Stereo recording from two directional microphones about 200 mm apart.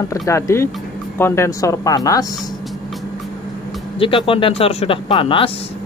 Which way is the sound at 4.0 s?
25° left (ahead or behind).